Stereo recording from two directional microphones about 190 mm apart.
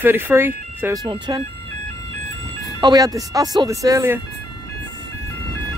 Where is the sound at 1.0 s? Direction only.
25° right (ahead or behind).